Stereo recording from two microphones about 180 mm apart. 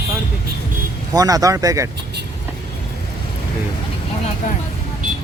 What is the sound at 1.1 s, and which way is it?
Speech, 20° right (ahead or behind).